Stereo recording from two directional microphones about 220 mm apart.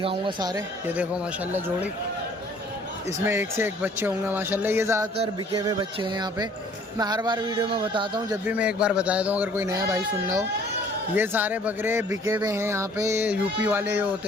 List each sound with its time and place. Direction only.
0.0 s speech: 25° right (ahead or behind); by 1.9 s 10° right (ahead or behind)
3.2 s speech: 10° right (ahead or behind)
8.4 s speech: 5° right (ahead or behind)